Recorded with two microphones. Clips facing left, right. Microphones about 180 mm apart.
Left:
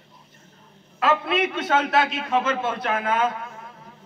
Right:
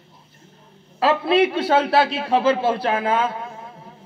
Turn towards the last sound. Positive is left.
turn(degrees=-30)  # may be behind; listen again after turning